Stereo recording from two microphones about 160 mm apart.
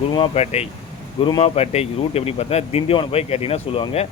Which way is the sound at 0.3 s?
40° left (ahead or behind).